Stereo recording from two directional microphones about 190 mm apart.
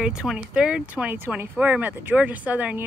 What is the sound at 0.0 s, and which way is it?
Speech, 5° right (ahead or behind).